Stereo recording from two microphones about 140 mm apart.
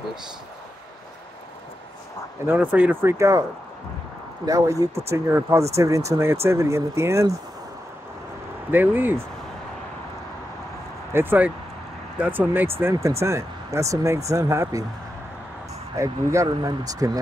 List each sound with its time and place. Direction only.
2.4 s speech: 15° right (ahead or behind)
4.5 s speech: 25° right (ahead or behind)
8.7 s speech: 15° right (ahead or behind)
11.1 s speech: 10° right (ahead or behind)
16.0 s speech: 20° right (ahead or behind)